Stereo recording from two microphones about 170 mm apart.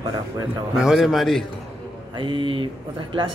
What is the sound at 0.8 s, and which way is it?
Speech, centre (ahead or behind).